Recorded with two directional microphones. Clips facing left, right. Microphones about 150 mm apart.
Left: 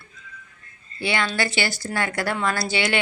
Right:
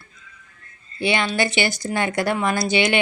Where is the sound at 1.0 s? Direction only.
20° right (ahead or behind).